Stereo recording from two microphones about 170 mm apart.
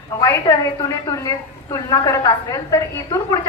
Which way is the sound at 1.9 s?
20° left (ahead or behind).